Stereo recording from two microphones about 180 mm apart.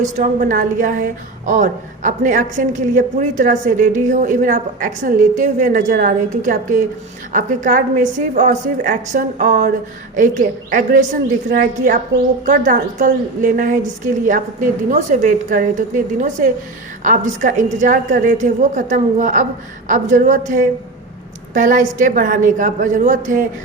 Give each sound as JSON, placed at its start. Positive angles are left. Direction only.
{"t": 0.0, "sound": "a woman's voice", "side_deg": -45}